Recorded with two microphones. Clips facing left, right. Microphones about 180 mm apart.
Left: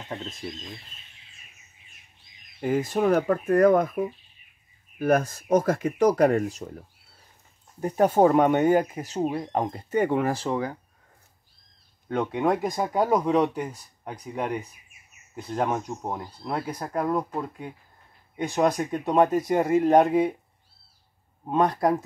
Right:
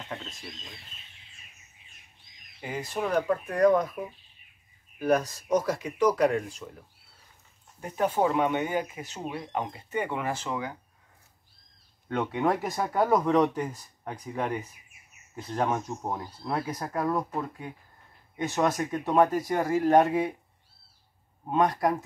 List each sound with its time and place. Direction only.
2.6 s speech: 50° left (ahead or behind)
4.9 s speech: 50° left (ahead or behind)
7.8 s speech: 40° left (ahead or behind)
12.1 s speech: 15° left (ahead or behind)
15.5 s speech: 15° left (ahead or behind)
18.3 s speech: 15° left (ahead or behind)
21.5 s speech: 25° left (ahead or behind)